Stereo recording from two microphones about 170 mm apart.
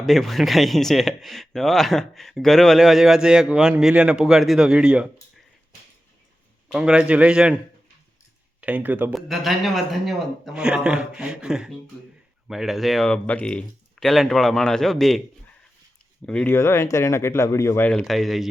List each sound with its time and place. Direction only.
0.0 s speech: centre (ahead or behind)
6.7 s speech: 5° right (ahead or behind)
8.6 s speech: 10° right (ahead or behind)
16.2 s speech: 5° left (ahead or behind)